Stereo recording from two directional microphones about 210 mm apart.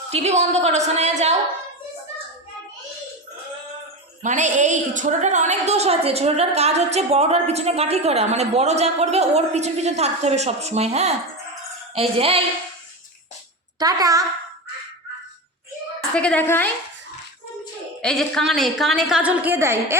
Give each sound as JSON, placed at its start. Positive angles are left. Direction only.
{"t": 0.1, "sound": "a woman's voice", "side_deg": -30}
{"t": 4.2, "sound": "a woman's voice", "side_deg": -35}
{"t": 13.7, "sound": "a woman's voice", "side_deg": -15}
{"t": 16.0, "sound": "a woman's voice", "side_deg": 5}
{"t": 18.0, "sound": "a woman's voice", "side_deg": 5}